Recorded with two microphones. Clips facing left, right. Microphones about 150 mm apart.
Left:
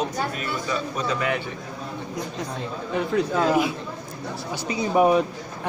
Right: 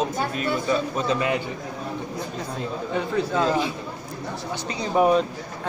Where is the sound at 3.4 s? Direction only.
10° left (ahead or behind).